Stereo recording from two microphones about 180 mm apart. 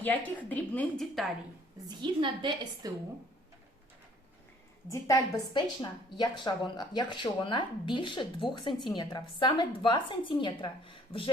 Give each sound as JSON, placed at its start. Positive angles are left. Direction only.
{"t": 0.0, "sound": "a woman's voice", "side_deg": 10}
{"t": 1.9, "sound": "a woman's voice", "side_deg": -25}
{"t": 4.9, "sound": "speech", "side_deg": 20}